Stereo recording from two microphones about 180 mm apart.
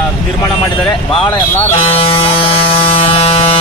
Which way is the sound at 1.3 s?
30° left (ahead or behind).